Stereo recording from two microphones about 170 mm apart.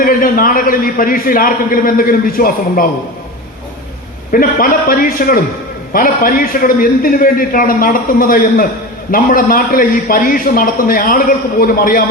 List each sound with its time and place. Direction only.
0.0 s a man's voice: 55° left (ahead or behind)
4.3 s a man's voice: 55° left (ahead or behind)